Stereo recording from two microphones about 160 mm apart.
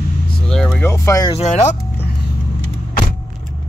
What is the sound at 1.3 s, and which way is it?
Speech, 40° left (ahead or behind).